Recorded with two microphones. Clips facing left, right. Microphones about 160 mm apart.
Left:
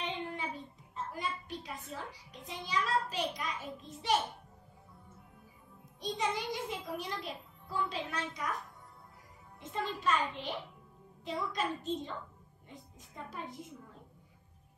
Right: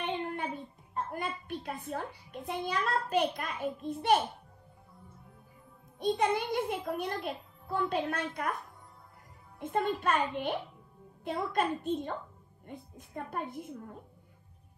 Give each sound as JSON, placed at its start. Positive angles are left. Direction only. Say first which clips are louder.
{"t": 0.0, "sound": "child singing", "louder": "right 4 dB", "side_deg": -55}
{"t": 0.9, "sound": "a child's voice", "louder": "right 3 dB", "side_deg": -55}
{"t": 5.9, "sound": "a child's voice", "louder": "right 7 dB", "side_deg": -55}
{"t": 9.6, "sound": "a child's voice", "louder": "right 7 dB", "side_deg": -55}